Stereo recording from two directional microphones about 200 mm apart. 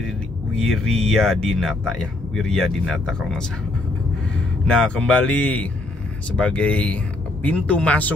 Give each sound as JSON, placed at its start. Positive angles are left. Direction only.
{"t": 0.6, "sound": "speech", "side_deg": 5}
{"t": 4.6, "sound": "speech", "side_deg": 5}